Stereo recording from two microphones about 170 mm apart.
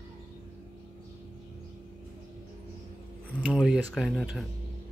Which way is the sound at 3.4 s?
5° right (ahead or behind).